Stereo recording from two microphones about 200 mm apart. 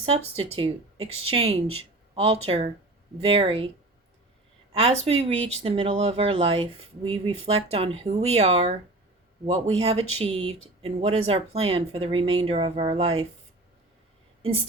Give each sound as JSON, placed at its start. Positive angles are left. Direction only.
{"t": 0.0, "sound": "speech", "side_deg": -30}
{"t": 4.7, "sound": "speech", "side_deg": -30}
{"t": 9.8, "sound": "speech", "side_deg": -30}